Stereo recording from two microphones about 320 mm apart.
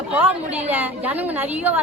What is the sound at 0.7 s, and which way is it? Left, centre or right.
A woman's voice, centre.